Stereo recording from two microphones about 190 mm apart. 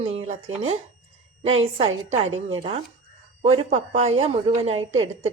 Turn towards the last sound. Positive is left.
turn(degrees=-35)  # may be behind; listen again after turning